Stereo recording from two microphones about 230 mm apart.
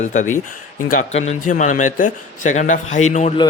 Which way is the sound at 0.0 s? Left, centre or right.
Left.